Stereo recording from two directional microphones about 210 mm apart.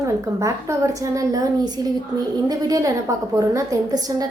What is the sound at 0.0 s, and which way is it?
A woman's voice, 15° right (ahead or behind).